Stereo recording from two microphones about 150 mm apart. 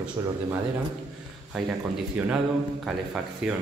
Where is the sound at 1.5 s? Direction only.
10° right (ahead or behind).